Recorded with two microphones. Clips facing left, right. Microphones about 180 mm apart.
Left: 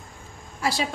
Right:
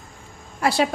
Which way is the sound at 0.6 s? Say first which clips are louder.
Right 6 dB; 60° right (ahead or behind).